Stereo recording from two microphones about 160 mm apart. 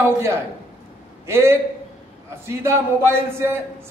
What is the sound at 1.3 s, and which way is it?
A man's voice, 15° right (ahead or behind).